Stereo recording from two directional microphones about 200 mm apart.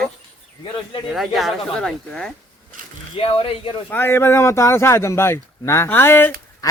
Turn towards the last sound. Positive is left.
turn(degrees=15)  # may be behind; listen again after turning